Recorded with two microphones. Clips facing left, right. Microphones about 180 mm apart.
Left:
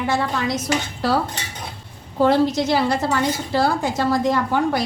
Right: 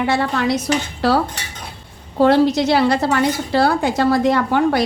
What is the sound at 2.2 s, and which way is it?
A woman's voice, 70° right (ahead or behind).